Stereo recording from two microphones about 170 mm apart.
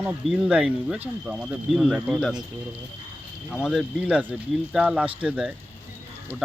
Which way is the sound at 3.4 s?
Centre (ahead or behind).